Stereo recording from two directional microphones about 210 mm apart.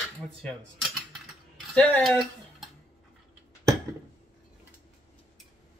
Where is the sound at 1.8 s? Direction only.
5° left (ahead or behind).